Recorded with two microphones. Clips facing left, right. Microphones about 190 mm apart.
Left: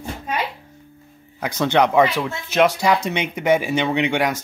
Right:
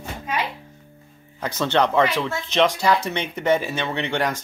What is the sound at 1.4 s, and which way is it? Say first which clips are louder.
Speech: left 3 dB; 10° left (ahead or behind).